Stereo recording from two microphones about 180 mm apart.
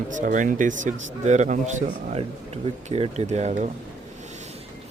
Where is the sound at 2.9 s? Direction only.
35° right (ahead or behind).